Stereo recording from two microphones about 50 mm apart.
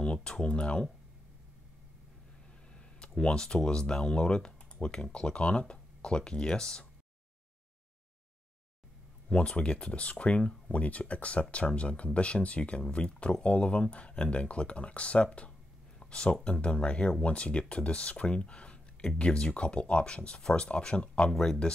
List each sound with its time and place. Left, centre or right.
0.0 s speech: centre
2.7 s speech: centre
9.3 s speech: left
16.0 s a sound: centre
16.4 s speech: left